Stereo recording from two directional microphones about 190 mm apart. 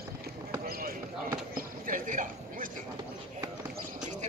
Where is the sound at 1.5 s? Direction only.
45° right (ahead or behind).